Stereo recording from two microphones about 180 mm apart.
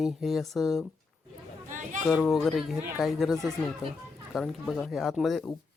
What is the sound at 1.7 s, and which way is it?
Chatter, 45° right (ahead or behind).